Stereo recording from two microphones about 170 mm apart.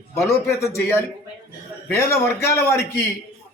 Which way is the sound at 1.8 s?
15° left (ahead or behind).